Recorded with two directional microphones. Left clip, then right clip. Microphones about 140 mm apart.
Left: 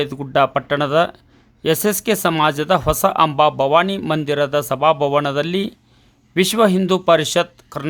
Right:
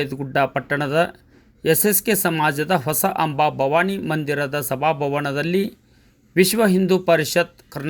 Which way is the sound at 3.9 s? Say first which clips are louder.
Left 4 dB; 35° left (ahead or behind).